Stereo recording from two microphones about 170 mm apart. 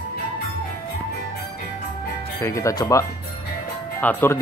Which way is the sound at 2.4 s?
15° left (ahead or behind).